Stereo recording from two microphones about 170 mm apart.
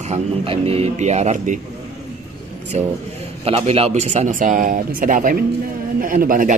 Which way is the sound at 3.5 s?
35° right (ahead or behind).